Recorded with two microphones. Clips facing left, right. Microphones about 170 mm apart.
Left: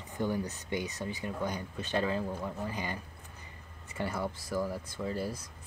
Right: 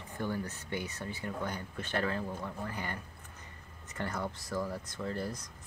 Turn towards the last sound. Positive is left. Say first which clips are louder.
# left 2 dB
turn(degrees=10)  # may be behind; listen again after turning